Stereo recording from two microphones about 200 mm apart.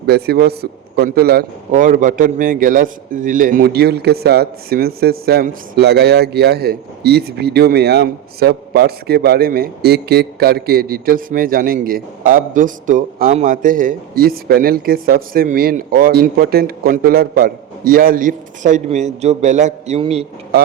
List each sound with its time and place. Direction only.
0.0 s a man's voice: 55° right (ahead or behind); by 20.2 s 30° right (ahead or behind)